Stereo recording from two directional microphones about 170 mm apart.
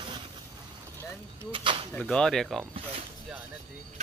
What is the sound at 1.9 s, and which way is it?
Speech, 5° left (ahead or behind).